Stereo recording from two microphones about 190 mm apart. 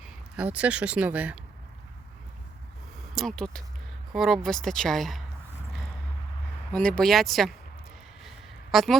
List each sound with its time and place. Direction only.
0.0 s speech: 5° right (ahead or behind)
3.2 s speech: centre (ahead or behind)
6.7 s speech: 5° left (ahead or behind)
8.7 s a woman's voice: centre (ahead or behind)